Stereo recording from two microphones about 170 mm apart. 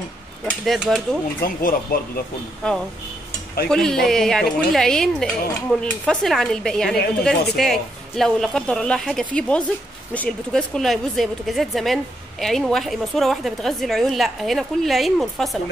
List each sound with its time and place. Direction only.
0.5 s cutlery: centre (ahead or behind)
1.4 s speech: 55° left (ahead or behind)
2.6 s a woman's voice: 5° left (ahead or behind)